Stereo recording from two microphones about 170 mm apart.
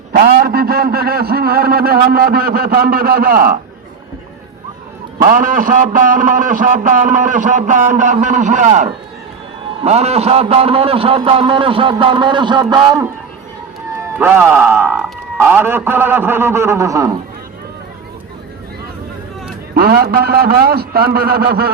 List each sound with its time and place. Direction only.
0.1 s a man's voice: 65° right (ahead or behind)
5.3 s a man's voice: 55° right (ahead or behind); by 13.1 s 25° right (ahead or behind)
14.2 s a man's voice: 15° right (ahead or behind)
19.7 s a man's voice: 65° right (ahead or behind)